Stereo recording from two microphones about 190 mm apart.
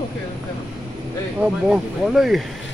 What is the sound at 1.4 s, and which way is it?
Speech, 5° right (ahead or behind).